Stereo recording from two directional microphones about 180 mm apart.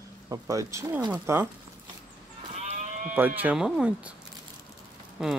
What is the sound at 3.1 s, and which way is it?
Speech, 10° right (ahead or behind).